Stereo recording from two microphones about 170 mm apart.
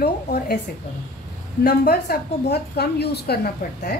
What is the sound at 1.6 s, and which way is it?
A woman's voice, 65° left (ahead or behind).